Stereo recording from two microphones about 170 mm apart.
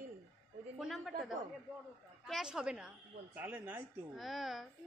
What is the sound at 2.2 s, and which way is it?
Speech, centre (ahead or behind).